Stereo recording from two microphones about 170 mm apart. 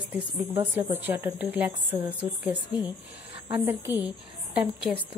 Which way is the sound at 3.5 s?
10° right (ahead or behind).